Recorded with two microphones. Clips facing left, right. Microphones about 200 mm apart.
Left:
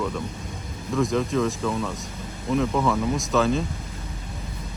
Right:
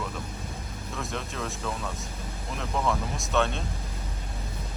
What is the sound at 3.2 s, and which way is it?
Speech, centre (ahead or behind).